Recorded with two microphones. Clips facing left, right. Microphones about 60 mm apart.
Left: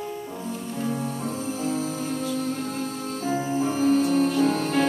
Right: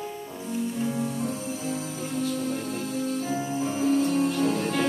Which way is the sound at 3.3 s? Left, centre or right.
Left.